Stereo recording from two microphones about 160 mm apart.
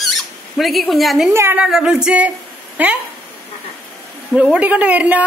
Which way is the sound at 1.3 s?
15° right (ahead or behind).